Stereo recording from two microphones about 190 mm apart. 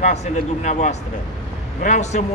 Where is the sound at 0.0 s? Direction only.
35° left (ahead or behind).